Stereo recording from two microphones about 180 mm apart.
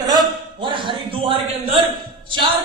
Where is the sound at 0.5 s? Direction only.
25° right (ahead or behind).